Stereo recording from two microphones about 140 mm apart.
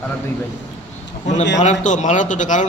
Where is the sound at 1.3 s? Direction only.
60° left (ahead or behind).